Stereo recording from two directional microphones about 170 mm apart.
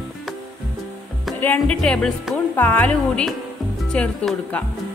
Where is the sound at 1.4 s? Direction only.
10° left (ahead or behind).